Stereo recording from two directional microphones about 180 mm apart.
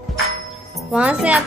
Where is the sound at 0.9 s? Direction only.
5° right (ahead or behind).